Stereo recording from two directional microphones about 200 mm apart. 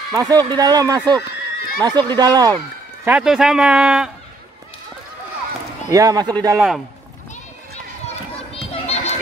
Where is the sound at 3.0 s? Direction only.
5° right (ahead or behind).